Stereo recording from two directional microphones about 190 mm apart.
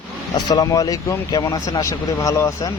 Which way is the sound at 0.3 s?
20° left (ahead or behind).